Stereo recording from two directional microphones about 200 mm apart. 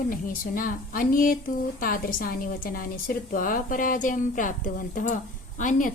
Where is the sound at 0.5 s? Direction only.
45° left (ahead or behind).